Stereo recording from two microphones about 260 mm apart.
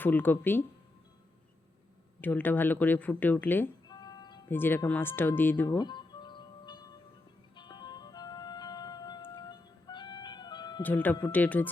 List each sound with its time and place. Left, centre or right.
0.0 s speech: centre
2.2 s speech: centre
7.5 s music: centre